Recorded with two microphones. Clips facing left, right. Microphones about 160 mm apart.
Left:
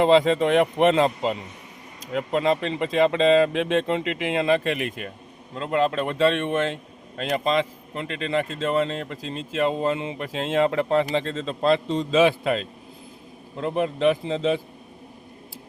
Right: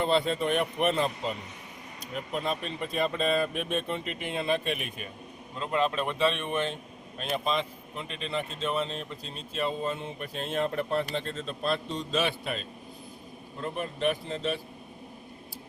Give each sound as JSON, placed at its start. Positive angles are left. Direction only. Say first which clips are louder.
{"t": 0.0, "sound": "speech", "louder": "left 9 dB", "side_deg": 90}